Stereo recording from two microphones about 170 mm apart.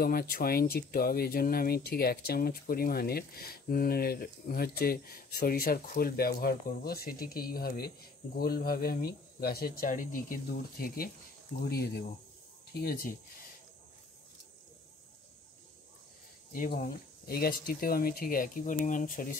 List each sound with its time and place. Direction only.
0.0 s speech: 60° left (ahead or behind)
16.5 s speech: 60° left (ahead or behind)